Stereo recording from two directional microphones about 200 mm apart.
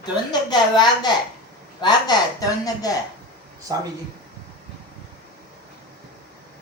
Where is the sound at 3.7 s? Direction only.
20° right (ahead or behind).